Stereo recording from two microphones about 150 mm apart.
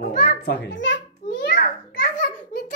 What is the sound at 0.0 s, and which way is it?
Children playing, 90° left.